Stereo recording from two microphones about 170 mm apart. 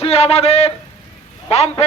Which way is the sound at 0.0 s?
35° left (ahead or behind).